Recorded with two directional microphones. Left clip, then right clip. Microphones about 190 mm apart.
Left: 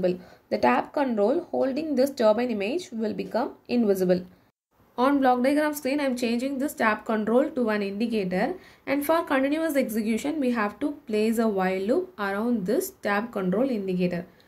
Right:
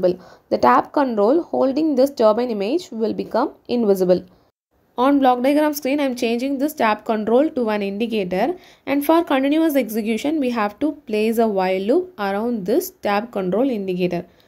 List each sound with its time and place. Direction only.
0.0 s a woman's voice: 30° right (ahead or behind)